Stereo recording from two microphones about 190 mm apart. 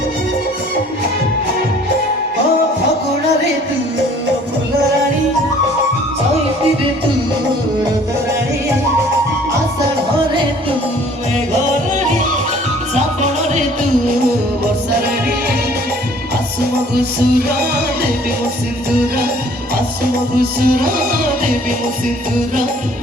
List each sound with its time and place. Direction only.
16.6 s music: 55° right (ahead or behind)
20.3 s music: 50° right (ahead or behind)